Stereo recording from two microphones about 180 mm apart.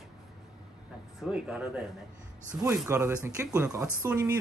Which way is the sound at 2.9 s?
15° right (ahead or behind).